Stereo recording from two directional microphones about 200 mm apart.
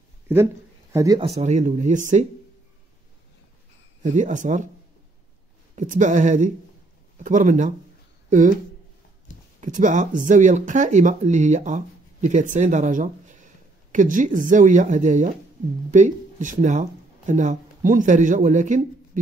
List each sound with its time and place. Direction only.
0.9 s speech: 20° right (ahead or behind)
1.2 s speech: 35° right (ahead or behind)
4.0 s speech: 40° right (ahead or behind)
5.8 s speech: 40° right (ahead or behind)
9.6 s speech: 40° right (ahead or behind)